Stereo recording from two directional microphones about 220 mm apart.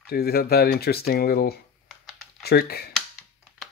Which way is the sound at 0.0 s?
45° left (ahead or behind).